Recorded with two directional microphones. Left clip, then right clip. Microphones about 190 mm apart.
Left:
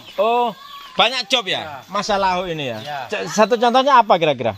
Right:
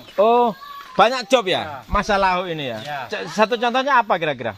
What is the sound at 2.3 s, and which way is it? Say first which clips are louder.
Speech: left 1 dB; 50° left (ahead or behind).